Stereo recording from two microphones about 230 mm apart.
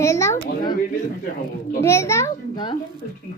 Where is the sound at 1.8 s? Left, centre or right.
Centre.